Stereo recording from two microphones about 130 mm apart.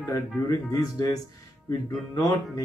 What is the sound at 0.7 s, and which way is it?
Speech, 30° left (ahead or behind).